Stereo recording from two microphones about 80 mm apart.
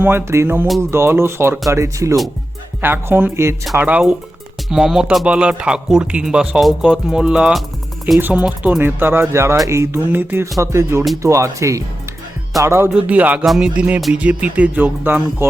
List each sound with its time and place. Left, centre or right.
0.0 s speech: right
2.8 s speech: right
4.7 s speech: centre
6.6 s speech: centre
8.8 s speech: right
10.1 s speech: right
10.6 s speech: right
12.9 s speech: centre
13.4 s speech: centre
13.7 s speech: centre